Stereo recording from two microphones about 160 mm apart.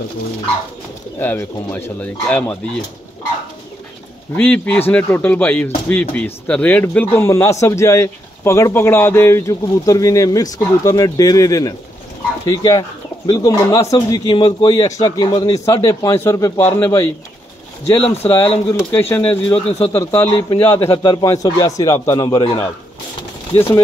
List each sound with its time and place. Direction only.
1.2 s speech: 15° left (ahead or behind)
4.4 s speech: 10° left (ahead or behind)
19.5 s speech: 35° left (ahead or behind)
20.2 s speech: 20° left (ahead or behind)
20.9 s speech: 25° left (ahead or behind)